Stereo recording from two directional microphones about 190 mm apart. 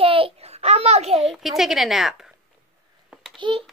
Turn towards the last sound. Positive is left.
turn(degrees=-25)  # may be behind; listen again after turning